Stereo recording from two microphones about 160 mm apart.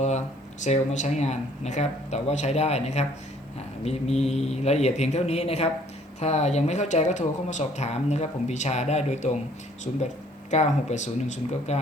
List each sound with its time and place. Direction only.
0.6 s speech: 50° left (ahead or behind)
10.5 s speech: 45° left (ahead or behind)